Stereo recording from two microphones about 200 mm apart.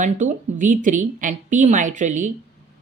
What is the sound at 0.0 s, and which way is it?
Speech, 40° right (ahead or behind).